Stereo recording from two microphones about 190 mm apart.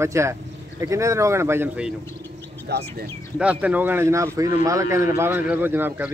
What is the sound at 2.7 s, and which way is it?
Speech, 60° right (ahead or behind).